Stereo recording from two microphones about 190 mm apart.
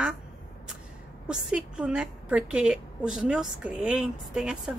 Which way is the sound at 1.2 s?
5° right (ahead or behind).